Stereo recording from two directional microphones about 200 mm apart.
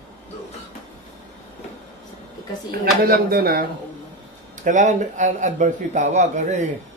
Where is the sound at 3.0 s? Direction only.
50° right (ahead or behind).